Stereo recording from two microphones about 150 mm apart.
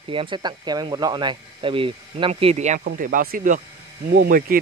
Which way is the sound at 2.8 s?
65° right (ahead or behind).